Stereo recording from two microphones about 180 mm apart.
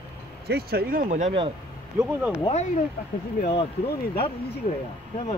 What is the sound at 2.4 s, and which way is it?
Speech, 40° left (ahead or behind).